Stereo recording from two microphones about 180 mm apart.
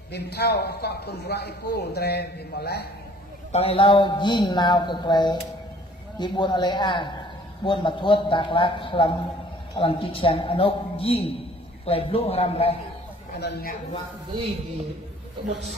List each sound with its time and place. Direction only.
0.1 s a man's voice: 65° left (ahead or behind)
3.5 s a man's voice: 30° left (ahead or behind)
13.4 s a man's voice: 60° left (ahead or behind)